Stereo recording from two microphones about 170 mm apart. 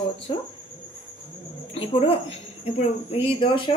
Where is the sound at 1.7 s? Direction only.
35° left (ahead or behind).